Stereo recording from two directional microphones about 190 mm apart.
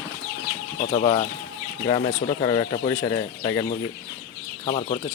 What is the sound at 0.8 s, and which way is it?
Speech, 35° left (ahead or behind).